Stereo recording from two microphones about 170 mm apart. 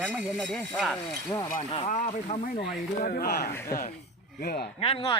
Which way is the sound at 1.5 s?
40° left (ahead or behind).